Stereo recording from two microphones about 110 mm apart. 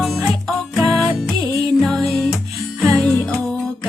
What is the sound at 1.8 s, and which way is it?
Music, 5° left (ahead or behind).